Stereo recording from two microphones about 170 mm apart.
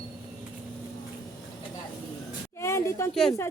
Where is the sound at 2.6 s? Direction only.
15° left (ahead or behind).